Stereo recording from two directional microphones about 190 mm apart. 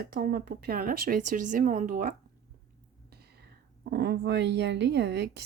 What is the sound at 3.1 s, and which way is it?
A woman's voice, 55° right (ahead or behind).